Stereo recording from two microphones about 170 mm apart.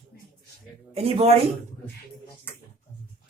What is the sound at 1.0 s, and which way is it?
Speech, 35° right (ahead or behind).